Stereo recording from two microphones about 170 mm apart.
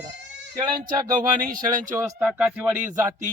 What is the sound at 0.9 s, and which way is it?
Speech, 25° right (ahead or behind).